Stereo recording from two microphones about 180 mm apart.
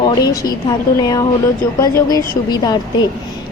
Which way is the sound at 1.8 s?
20° left (ahead or behind).